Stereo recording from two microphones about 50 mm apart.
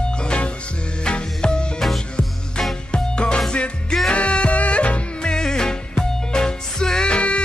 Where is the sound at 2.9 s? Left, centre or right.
Centre.